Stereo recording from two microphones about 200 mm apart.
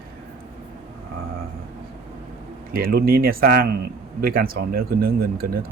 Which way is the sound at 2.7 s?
50° right (ahead or behind).